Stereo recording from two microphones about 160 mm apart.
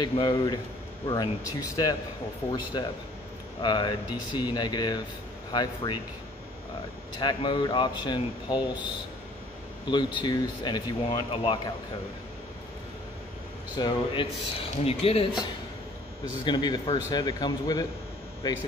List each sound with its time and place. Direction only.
0.0 s speech: 25° left (ahead or behind)
7.2 s speech: 30° left (ahead or behind)
9.8 s speech: 30° left (ahead or behind)
13.7 s a man's voice: 30° left (ahead or behind)
16.4 s speech: 25° left (ahead or behind)